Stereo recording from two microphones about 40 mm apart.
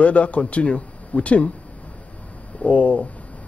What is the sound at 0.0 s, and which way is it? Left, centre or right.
A man's voice, left.